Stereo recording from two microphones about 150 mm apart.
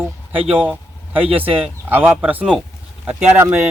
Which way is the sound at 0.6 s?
10° right (ahead or behind).